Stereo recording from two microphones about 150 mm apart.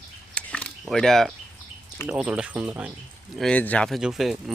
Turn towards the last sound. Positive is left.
turn(degrees=0)  # may be behind; listen again after turning